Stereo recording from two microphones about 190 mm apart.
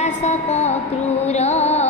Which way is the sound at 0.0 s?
35° left (ahead or behind).